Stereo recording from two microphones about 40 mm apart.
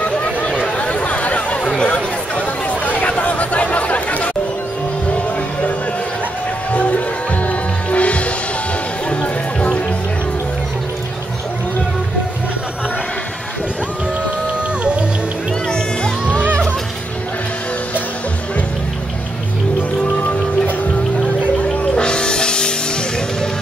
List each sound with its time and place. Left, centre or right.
0.0 s a sound: left
0.7 s chatter: left
2.8 s chatter: left
6.7 s music: left
15.7 s music: left
20.2 s music: left
21.9 s music: left